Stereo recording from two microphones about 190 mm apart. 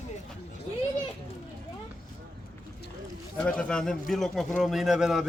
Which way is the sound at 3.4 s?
5° left (ahead or behind).